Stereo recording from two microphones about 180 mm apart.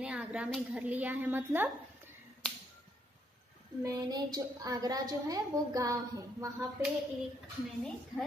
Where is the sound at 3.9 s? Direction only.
20° right (ahead or behind).